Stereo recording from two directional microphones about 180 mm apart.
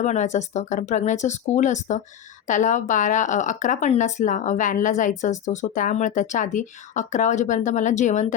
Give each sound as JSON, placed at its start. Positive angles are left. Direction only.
{"t": 0.0, "sound": "speech", "side_deg": 40}